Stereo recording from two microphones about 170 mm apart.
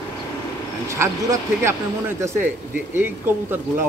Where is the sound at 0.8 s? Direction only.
15° right (ahead or behind).